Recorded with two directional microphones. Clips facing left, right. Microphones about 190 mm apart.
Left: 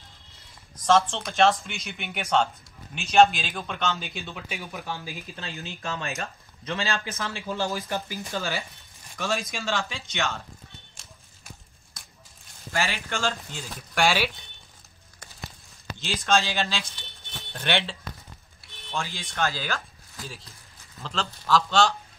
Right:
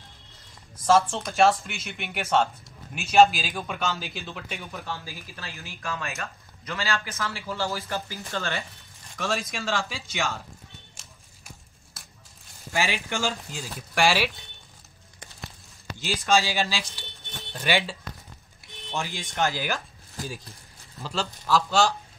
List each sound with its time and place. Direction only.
0.7 s speech: 5° right (ahead or behind)
4.7 s speech: 15° left (ahead or behind); by 10.4 s 5° right (ahead or behind)
12.7 s speech: 15° right (ahead or behind)
16.0 s speech: 10° right (ahead or behind)
18.9 s speech: 20° right (ahead or behind)
21.0 s speech: 5° right (ahead or behind)